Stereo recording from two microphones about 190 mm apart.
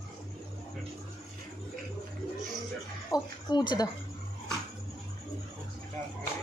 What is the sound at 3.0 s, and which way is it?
Speech, 20° left (ahead or behind).